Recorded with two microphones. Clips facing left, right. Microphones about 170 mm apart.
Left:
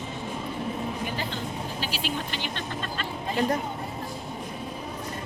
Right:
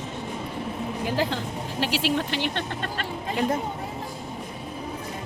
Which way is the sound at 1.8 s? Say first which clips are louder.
Right 10 dB; 75° right (ahead or behind).